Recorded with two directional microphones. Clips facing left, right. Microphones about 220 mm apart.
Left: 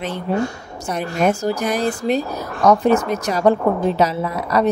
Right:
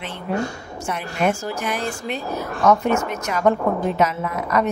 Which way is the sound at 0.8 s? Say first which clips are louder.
Left 3 dB; 40° left (ahead or behind).